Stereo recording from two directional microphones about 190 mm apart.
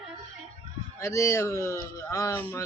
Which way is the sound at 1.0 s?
15° left (ahead or behind).